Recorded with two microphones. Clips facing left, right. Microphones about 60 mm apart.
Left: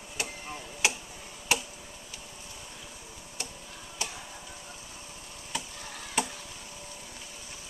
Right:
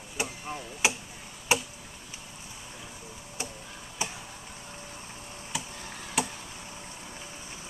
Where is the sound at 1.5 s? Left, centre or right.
Right.